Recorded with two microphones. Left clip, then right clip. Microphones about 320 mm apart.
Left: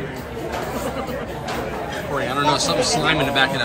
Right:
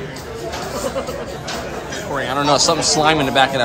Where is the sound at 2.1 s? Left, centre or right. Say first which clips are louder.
Right 3 dB; centre.